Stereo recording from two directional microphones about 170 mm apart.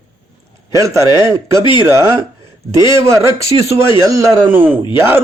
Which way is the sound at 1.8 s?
15° right (ahead or behind).